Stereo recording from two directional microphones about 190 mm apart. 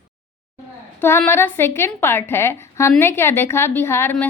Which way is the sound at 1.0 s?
15° left (ahead or behind).